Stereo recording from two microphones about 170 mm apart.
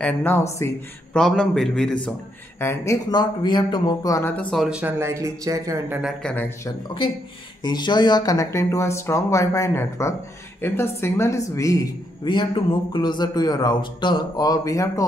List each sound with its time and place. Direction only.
0.0 s speech: 10° left (ahead or behind)
1.1 s a man's voice: 5° left (ahead or behind)
2.6 s speech: 15° left (ahead or behind); by 5.9 s 20° right (ahead or behind)
6.2 s speech: 10° left (ahead or behind)
7.6 s a woman's voice: 25° left (ahead or behind)